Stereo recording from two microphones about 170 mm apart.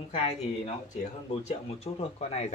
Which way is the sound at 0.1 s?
40° left (ahead or behind).